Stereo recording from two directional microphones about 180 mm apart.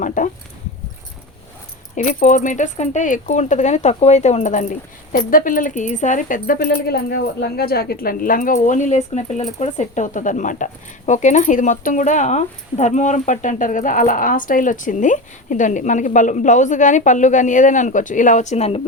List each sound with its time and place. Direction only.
0.0 s speech: 45° left (ahead or behind)
2.0 s speech: 45° left (ahead or behind)